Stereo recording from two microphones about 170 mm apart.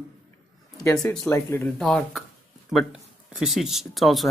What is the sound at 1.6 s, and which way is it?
Speech, 5° left (ahead or behind).